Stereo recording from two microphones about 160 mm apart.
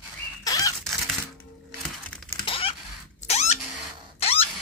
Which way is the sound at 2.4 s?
35° left (ahead or behind).